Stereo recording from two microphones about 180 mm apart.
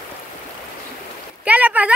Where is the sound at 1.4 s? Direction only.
10° right (ahead or behind).